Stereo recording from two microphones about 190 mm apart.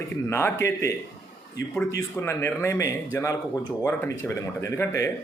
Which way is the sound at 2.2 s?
15° left (ahead or behind).